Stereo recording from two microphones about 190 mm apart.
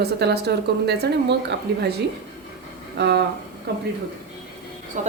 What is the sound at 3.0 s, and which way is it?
Speech, 60° right (ahead or behind).